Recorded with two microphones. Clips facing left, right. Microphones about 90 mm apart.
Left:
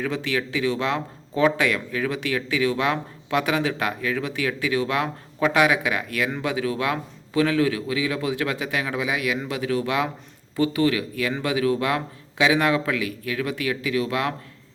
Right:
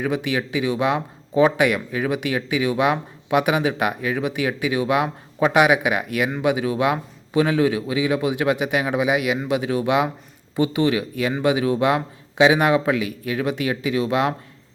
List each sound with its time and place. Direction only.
0.0 s a man's voice: 15° right (ahead or behind)